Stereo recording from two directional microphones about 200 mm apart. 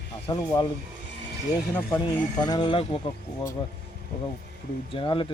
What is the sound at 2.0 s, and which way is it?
Speech, 20° left (ahead or behind).